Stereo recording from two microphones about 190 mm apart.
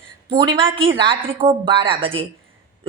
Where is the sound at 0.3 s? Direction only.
25° right (ahead or behind).